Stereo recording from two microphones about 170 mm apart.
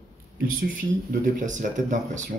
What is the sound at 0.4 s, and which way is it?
Speech, 55° right (ahead or behind).